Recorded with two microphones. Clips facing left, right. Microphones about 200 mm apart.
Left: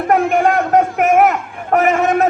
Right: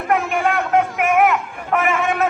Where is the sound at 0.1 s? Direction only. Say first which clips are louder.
Left 5 dB; 50° left (ahead or behind).